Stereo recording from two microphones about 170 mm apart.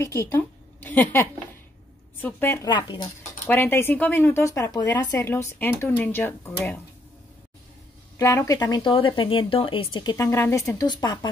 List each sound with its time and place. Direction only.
0.0 s a woman's voice: 15° left (ahead or behind)
2.2 s speech: 15° left (ahead or behind)
2.7 s speech: 30° left (ahead or behind)
3.4 s speech: 15° left (ahead or behind)
8.2 s speech: 20° left (ahead or behind)
10.1 s speech: 15° left (ahead or behind)